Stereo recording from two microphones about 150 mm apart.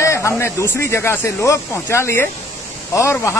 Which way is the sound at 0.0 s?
20° left (ahead or behind).